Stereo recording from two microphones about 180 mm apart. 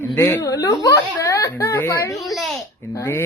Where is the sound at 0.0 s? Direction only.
10° left (ahead or behind).